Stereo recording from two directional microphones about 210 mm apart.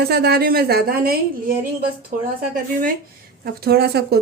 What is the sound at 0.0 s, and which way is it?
A woman's voice, 50° right (ahead or behind).